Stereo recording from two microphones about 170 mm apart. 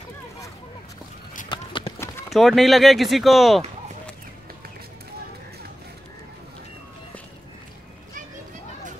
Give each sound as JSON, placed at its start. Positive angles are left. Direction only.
{"t": 1.5, "sound": "run", "side_deg": 30}
{"t": 2.0, "sound": "clip-clop", "side_deg": 15}
{"t": 2.3, "sound": "speech", "side_deg": 0}